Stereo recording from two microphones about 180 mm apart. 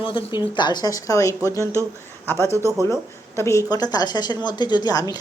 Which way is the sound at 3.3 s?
15° left (ahead or behind).